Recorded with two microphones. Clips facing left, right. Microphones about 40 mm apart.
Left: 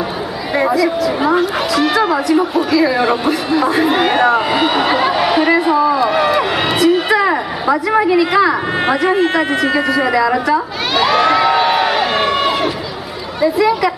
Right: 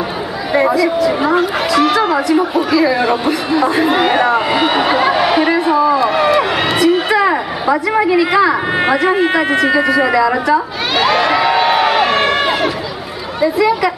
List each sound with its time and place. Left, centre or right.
0.6 s a woman's voice: centre
5.7 s a sound: centre
13.4 s a woman's voice: centre